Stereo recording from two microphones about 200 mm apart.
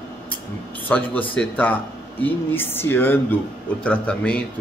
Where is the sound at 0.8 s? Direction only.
10° left (ahead or behind).